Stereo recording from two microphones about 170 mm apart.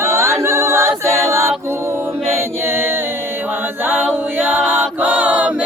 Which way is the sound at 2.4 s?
15° right (ahead or behind).